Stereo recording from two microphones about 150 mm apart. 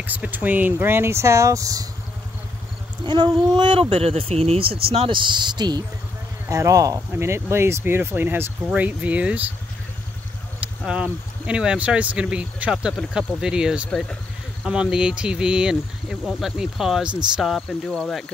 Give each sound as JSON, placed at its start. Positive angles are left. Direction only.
{"t": 0.0, "sound": "speech", "side_deg": -10}
{"t": 3.3, "sound": "speech", "side_deg": -30}
{"t": 11.4, "sound": "speech", "side_deg": -5}
{"t": 13.8, "sound": "speech", "side_deg": 5}
{"t": 14.6, "sound": "speech", "side_deg": -5}